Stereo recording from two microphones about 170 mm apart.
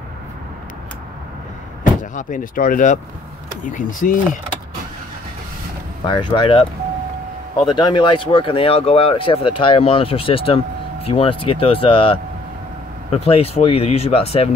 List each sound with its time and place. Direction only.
2.1 s speech: 55° left (ahead or behind)
6.0 s speech: 25° left (ahead or behind)